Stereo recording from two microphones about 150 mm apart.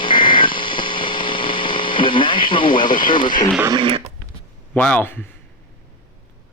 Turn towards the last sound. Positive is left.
turn(degrees=10)  # may be behind; listen again after turning